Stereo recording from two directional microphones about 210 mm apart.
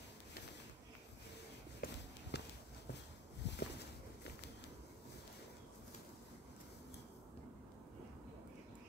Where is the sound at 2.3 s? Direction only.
50° left (ahead or behind).